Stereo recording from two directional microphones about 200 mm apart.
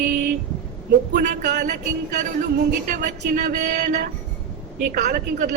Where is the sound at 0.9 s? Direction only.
40° right (ahead or behind).